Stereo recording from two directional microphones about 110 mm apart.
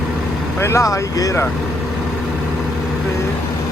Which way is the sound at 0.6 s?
25° left (ahead or behind).